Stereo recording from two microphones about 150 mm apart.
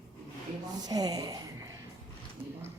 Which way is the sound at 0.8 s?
25° right (ahead or behind).